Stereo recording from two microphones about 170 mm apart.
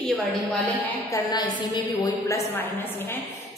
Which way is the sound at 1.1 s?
25° left (ahead or behind).